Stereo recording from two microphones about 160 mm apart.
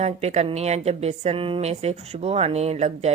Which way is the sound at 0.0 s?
45° right (ahead or behind).